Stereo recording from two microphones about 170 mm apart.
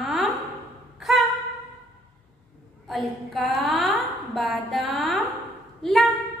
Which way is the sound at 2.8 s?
Centre (ahead or behind).